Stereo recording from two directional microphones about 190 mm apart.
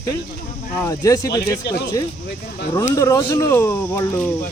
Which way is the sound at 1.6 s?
60° left (ahead or behind).